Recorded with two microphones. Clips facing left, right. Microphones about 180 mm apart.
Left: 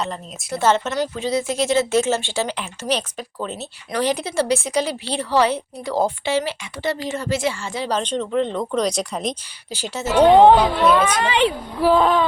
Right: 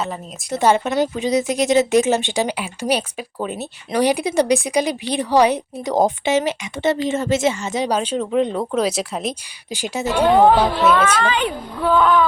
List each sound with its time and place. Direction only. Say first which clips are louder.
0.5 s a woman's voice: right 2 dB; 15° right (ahead or behind)
9.7 s a woman's voice: left 2 dB; 15° right (ahead or behind)
10.2 s speech: left 2 dB; 25° left (ahead or behind)
10.6 s speech: even; 5° right (ahead or behind)
10.9 s a woman's voice: right 1 dB; 10° left (ahead or behind)
11.8 s speech: even; 30° left (ahead or behind)